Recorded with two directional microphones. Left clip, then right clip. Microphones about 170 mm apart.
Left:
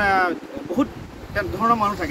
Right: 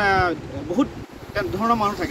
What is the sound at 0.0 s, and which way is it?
Speech, 5° left (ahead or behind).